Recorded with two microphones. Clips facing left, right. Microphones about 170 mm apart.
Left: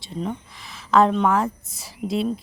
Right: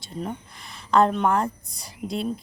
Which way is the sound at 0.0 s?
5° right (ahead or behind).